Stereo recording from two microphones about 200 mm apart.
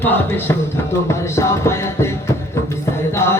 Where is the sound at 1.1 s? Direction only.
15° left (ahead or behind).